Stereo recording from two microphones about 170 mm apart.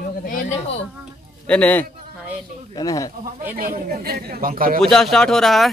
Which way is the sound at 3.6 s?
60° right (ahead or behind).